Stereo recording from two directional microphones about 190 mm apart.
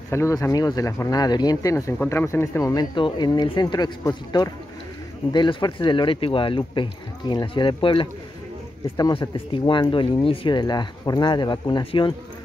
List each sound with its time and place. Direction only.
0.1 s speech: 15° left (ahead or behind)